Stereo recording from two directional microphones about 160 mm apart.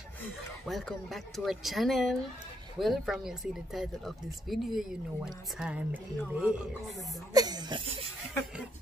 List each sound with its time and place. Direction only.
0.7 s speech: centre (ahead or behind)
7.3 s speech: 25° right (ahead or behind)